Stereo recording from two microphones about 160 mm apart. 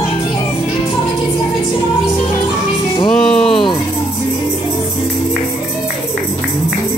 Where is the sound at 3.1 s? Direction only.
5° left (ahead or behind).